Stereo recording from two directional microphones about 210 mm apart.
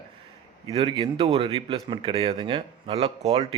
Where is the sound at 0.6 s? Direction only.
25° right (ahead or behind).